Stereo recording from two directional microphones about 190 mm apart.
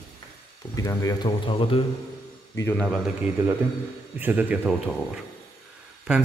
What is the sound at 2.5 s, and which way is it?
Speech, 10° left (ahead or behind).